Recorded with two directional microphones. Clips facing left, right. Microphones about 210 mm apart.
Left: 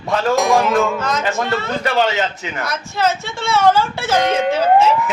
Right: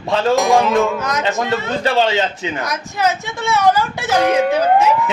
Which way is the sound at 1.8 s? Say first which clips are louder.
Right 2 dB; 25° right (ahead or behind).